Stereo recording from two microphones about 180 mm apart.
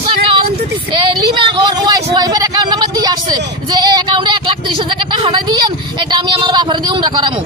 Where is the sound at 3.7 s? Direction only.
25° right (ahead or behind).